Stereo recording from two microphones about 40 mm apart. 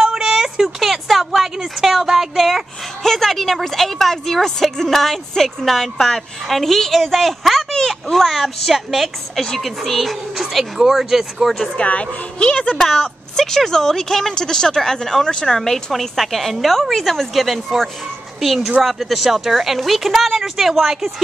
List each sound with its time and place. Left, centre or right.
0.0 s a sound: centre
3.0 s a woman's voice: centre
11.7 s a woman's voice: left
12.7 s a woman's voice: centre